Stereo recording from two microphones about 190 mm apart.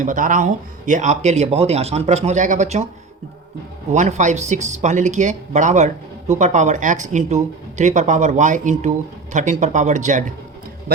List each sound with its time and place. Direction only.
0.0 s speech: 45° right (ahead or behind)
3.9 s speech: 40° right (ahead or behind)